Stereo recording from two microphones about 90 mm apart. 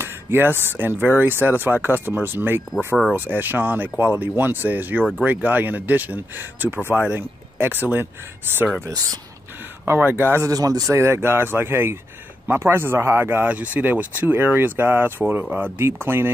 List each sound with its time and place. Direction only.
0.0 s speech: 25° right (ahead or behind)
9.8 s speech: 20° right (ahead or behind)
10.5 s speech: 40° right (ahead or behind); by 16.3 s 25° right (ahead or behind)